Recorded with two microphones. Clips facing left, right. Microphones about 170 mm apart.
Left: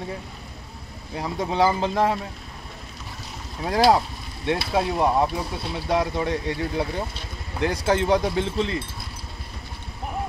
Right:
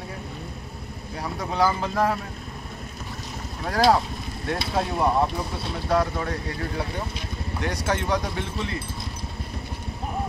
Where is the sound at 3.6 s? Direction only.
10° left (ahead or behind).